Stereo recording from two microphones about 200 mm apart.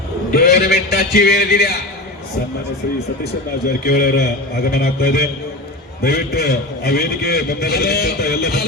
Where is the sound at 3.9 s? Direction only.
50° left (ahead or behind).